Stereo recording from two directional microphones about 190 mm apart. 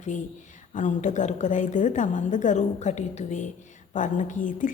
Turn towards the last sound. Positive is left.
turn(degrees=45)  # may be behind; listen again after turning